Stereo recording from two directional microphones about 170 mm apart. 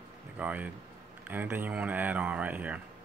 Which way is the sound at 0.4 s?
10° right (ahead or behind).